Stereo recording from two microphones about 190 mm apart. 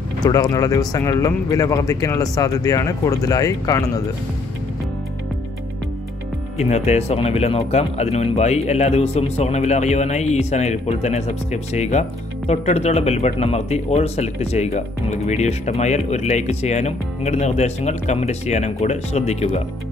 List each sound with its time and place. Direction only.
0.2 s speech: 20° left (ahead or behind)
6.6 s speech: 35° left (ahead or behind)